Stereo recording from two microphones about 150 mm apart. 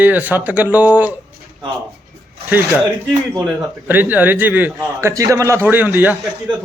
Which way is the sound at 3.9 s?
10° right (ahead or behind).